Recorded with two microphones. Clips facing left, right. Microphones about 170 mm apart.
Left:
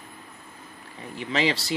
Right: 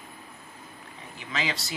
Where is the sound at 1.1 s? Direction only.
30° left (ahead or behind).